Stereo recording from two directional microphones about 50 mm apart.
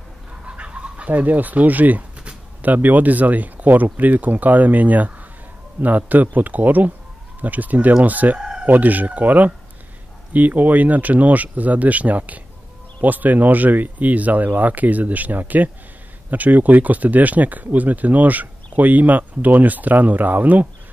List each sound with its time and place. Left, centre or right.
0.5 s speech: right
8.4 s chicken: centre
8.6 s speech: right